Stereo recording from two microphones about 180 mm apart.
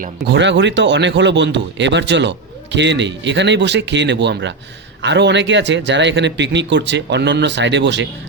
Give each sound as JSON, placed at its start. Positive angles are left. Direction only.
{"t": 0.3, "sound": "speech", "side_deg": -75}